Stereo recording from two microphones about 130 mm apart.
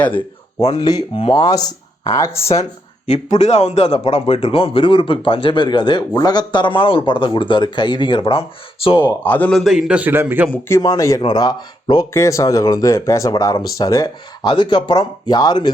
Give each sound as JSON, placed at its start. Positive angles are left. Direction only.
{"t": 0.6, "sound": "speech", "side_deg": 30}
{"t": 3.1, "sound": "a man's voice", "side_deg": 60}
{"t": 9.0, "sound": "a man's voice", "side_deg": 15}
{"t": 9.5, "sound": "a man's voice", "side_deg": 0}
{"t": 10.8, "sound": "speech", "side_deg": 25}
{"t": 14.5, "sound": "speech", "side_deg": 35}